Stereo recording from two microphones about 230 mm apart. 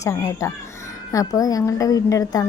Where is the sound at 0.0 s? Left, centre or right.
Centre.